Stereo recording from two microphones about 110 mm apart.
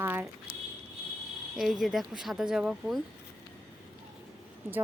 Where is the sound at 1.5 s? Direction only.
5° right (ahead or behind).